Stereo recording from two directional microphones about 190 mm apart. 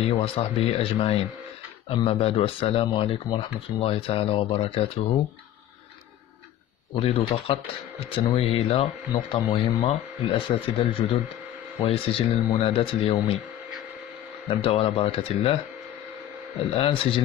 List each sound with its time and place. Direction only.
0.0 s speech: 30° left (ahead or behind)
6.9 s speech: 30° left (ahead or behind)
14.5 s speech: 30° left (ahead or behind)
16.7 s speech: 30° left (ahead or behind)